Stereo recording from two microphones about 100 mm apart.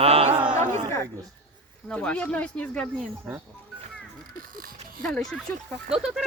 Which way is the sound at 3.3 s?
5° right (ahead or behind).